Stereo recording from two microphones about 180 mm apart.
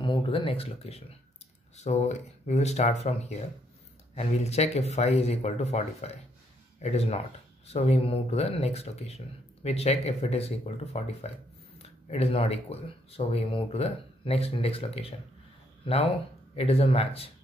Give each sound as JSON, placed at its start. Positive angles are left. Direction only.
{"t": 0.0, "sound": "speech", "side_deg": 30}